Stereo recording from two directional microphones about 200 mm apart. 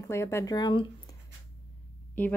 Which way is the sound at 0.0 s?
15° left (ahead or behind).